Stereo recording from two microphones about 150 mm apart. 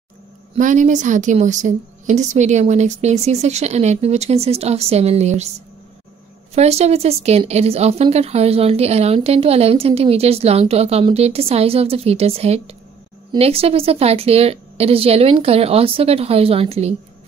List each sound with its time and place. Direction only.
0.6 s a woman's voice: 55° right (ahead or behind)
6.5 s a woman's voice: 45° right (ahead or behind)